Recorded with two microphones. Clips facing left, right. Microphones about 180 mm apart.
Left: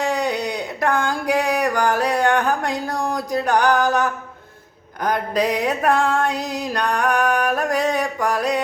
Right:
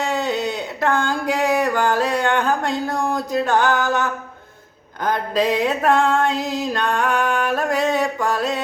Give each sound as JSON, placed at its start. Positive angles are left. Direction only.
{"t": 0.0, "sound": "a sound", "side_deg": -20}
{"t": 3.2, "sound": "music", "side_deg": -25}
{"t": 5.4, "sound": "music", "side_deg": -25}